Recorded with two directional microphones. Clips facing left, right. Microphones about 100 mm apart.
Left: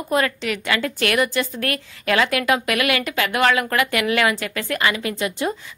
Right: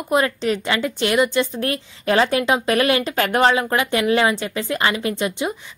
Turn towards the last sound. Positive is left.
turn(degrees=-25)  # may be behind; listen again after turning